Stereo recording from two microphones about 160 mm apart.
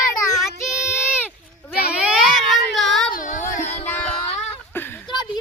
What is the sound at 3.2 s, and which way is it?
Child singing, 55° left (ahead or behind).